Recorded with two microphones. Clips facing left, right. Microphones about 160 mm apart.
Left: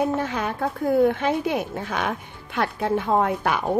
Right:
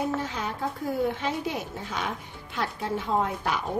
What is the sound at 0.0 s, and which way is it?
A woman's voice, 60° left (ahead or behind).